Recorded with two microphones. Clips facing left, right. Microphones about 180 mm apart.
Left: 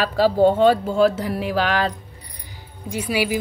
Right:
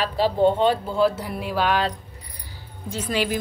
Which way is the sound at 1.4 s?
90° left.